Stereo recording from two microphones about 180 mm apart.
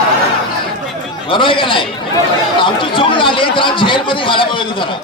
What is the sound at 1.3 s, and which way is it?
Speech, 30° left (ahead or behind).